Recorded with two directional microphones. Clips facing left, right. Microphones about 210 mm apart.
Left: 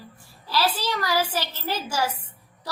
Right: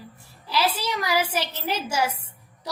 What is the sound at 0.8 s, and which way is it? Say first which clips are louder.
Speech: even; 10° right (ahead or behind).